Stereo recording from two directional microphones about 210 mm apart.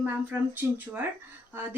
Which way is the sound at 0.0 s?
10° right (ahead or behind).